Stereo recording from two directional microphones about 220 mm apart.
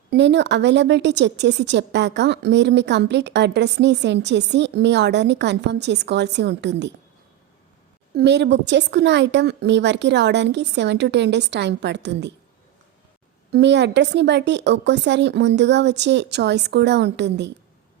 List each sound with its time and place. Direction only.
0.1 s a woman's voice: 50° right (ahead or behind)
8.1 s a woman's voice: 50° right (ahead or behind)
13.5 s a woman's voice: 50° right (ahead or behind)